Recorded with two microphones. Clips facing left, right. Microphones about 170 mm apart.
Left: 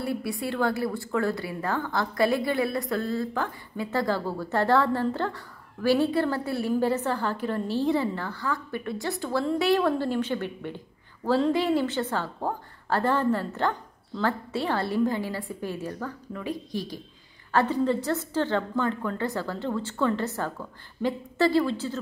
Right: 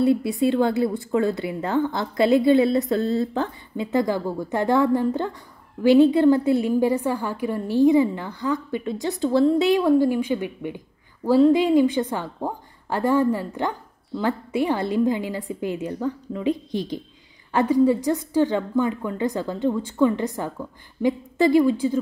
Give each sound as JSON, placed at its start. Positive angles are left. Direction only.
{"t": 0.0, "sound": "a woman's voice", "side_deg": -25}